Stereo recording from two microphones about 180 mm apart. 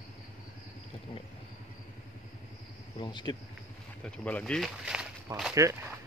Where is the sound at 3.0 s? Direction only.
25° left (ahead or behind).